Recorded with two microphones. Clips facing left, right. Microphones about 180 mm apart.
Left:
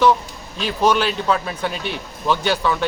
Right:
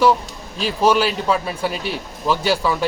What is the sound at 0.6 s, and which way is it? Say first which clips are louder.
Speech: right 1 dB; 5° right (ahead or behind).